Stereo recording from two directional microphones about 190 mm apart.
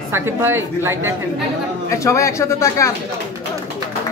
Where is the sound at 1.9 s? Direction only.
15° left (ahead or behind).